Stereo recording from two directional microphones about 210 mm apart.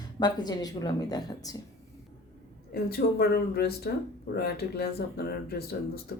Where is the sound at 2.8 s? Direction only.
50° left (ahead or behind).